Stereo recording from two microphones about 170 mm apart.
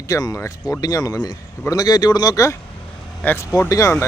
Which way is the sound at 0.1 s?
20° left (ahead or behind).